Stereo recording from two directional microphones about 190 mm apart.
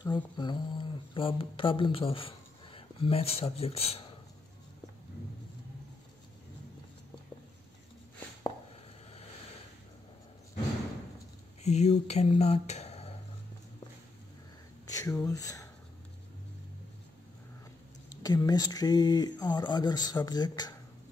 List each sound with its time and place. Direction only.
0.0 s speech: 25° left (ahead or behind)
11.6 s speech: 35° left (ahead or behind)
14.9 s speech: 15° left (ahead or behind)
18.1 s speech: 20° left (ahead or behind)